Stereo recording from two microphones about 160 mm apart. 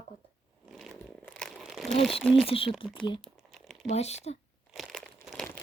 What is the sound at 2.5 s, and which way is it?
Speech, 35° left (ahead or behind).